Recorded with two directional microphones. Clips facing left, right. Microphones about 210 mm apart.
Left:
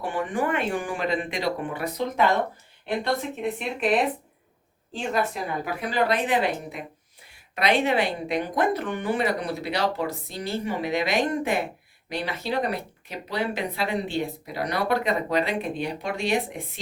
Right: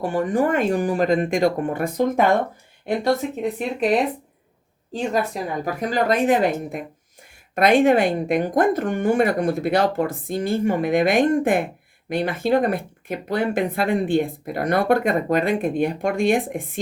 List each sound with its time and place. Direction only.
0.0 s speech: 40° right (ahead or behind)
4.9 s speech: 40° right (ahead or behind)